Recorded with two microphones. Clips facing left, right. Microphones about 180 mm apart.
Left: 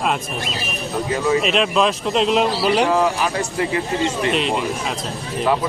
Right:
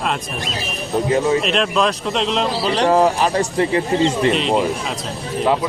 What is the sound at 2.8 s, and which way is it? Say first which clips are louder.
Speech: right 3 dB; 35° right (ahead or behind).